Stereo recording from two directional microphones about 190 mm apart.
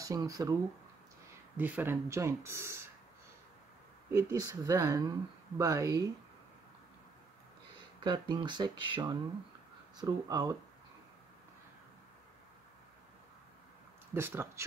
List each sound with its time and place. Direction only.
0.0 s speech: 20° right (ahead or behind)
1.6 s speech: 10° right (ahead or behind)
4.1 s speech: 15° right (ahead or behind)
8.0 s speech: 25° right (ahead or behind)
14.1 s speech: 10° right (ahead or behind)